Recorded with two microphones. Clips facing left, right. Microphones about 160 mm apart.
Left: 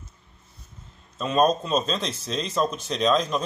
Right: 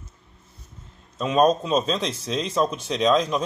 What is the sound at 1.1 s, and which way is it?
Speech, 10° right (ahead or behind).